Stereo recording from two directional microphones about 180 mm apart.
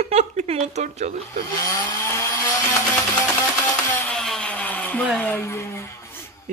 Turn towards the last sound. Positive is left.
turn(degrees=15)  # may be behind; listen again after turning